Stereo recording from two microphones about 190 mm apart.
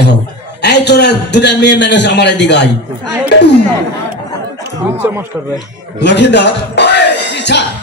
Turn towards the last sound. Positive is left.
turn(degrees=65)  # may be behind; listen again after turning